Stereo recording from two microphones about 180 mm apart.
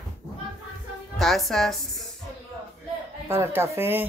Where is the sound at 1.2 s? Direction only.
Centre (ahead or behind).